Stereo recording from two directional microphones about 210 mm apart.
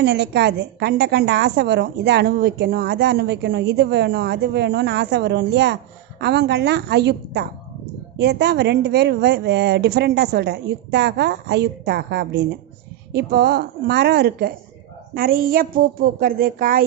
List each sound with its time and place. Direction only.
0.0 s a woman's voice: 50° right (ahead or behind)